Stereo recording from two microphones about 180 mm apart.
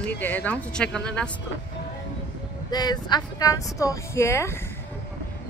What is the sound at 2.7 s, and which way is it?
Speech, 20° left (ahead or behind).